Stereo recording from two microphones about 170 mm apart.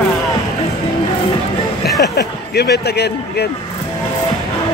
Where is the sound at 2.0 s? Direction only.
75° left (ahead or behind).